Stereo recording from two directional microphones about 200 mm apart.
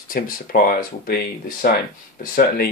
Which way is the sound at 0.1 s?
45° left (ahead or behind).